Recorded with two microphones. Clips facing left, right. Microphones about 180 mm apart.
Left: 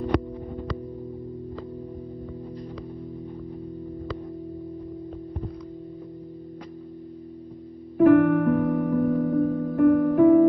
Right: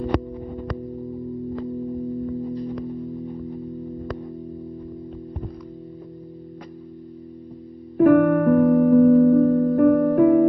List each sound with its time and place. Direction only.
1.9 s music: 20° right (ahead or behind)
8.0 s music: 50° right (ahead or behind)
8.5 s music: 40° right (ahead or behind)